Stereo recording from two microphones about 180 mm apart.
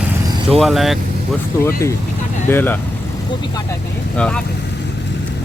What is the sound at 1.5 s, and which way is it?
Speech, 20° left (ahead or behind).